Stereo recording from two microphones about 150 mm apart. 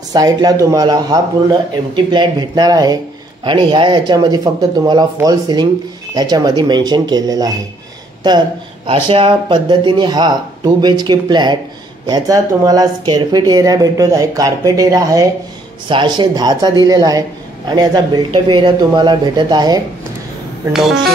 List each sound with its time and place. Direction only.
0.1 s speech: 25° right (ahead or behind)